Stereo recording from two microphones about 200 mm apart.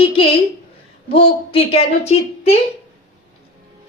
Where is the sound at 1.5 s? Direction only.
30° left (ahead or behind).